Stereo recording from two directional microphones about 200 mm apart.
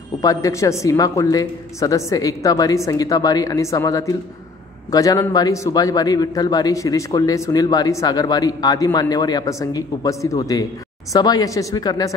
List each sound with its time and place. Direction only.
0.2 s a woman's voice: 15° left (ahead or behind)